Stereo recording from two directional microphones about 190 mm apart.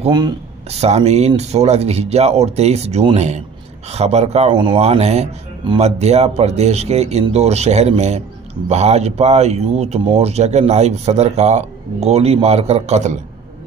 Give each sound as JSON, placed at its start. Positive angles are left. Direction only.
{"t": 0.0, "sound": "speech", "side_deg": -25}